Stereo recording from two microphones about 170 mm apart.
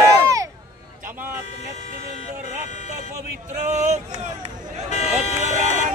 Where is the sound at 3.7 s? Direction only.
45° right (ahead or behind).